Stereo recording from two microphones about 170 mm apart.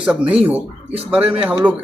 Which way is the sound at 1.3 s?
10° right (ahead or behind).